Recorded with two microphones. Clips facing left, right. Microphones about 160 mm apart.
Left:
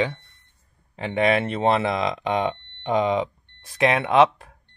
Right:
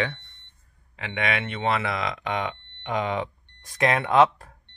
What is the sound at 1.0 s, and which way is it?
Speech, 30° left (ahead or behind).